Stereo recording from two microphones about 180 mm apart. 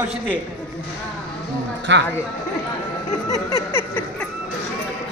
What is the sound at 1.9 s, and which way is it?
Speech, 80° right.